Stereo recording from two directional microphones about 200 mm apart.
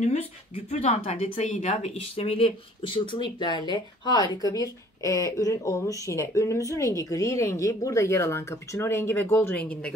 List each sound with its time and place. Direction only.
0.7 s speech: 35° left (ahead or behind); by 9.9 s 5° left (ahead or behind)